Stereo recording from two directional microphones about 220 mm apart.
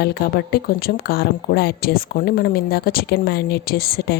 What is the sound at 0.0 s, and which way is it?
A woman's voice, 45° left (ahead or behind).